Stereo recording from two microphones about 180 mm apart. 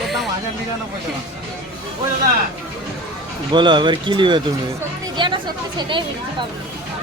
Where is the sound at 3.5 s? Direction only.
25° right (ahead or behind).